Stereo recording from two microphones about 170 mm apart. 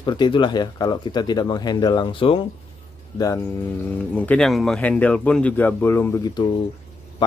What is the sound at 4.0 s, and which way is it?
Speech, 10° left (ahead or behind).